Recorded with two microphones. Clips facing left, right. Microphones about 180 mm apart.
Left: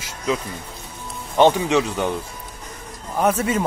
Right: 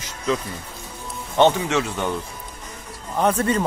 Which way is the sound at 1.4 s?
15° left (ahead or behind).